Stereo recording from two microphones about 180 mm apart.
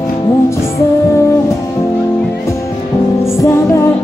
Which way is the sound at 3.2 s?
15° left (ahead or behind).